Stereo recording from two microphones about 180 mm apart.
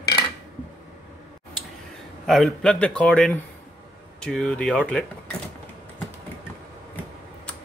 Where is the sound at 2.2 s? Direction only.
Centre (ahead or behind).